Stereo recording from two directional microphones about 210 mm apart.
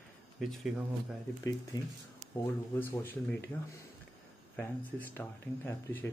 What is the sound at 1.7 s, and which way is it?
Speech, 20° left (ahead or behind).